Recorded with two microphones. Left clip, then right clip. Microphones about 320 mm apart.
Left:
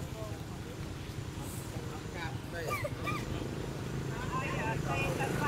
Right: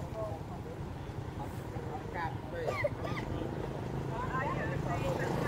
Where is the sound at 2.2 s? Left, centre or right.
Right.